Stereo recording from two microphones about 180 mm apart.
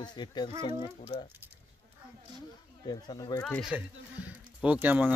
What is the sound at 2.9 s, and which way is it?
Speech, 25° left (ahead or behind).